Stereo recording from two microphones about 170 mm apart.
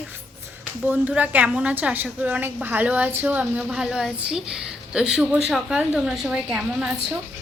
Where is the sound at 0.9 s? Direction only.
10° right (ahead or behind).